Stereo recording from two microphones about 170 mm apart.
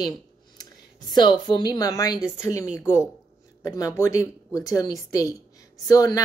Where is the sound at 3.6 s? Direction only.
20° left (ahead or behind).